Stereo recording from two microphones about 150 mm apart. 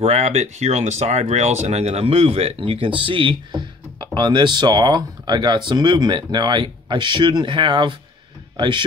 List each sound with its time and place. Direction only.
0.0 s speech: 45° right (ahead or behind)